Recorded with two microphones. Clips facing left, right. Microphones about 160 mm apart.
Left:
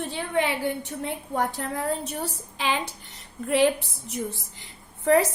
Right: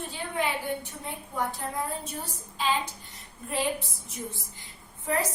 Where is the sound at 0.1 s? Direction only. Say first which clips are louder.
Left 4 dB; 75° left (ahead or behind).